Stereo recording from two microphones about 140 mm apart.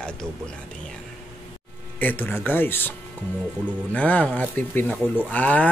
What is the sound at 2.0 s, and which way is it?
Speech, 10° left (ahead or behind).